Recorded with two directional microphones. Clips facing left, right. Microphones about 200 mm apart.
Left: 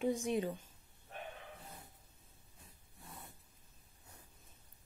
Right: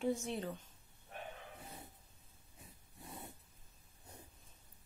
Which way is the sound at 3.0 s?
20° right (ahead or behind).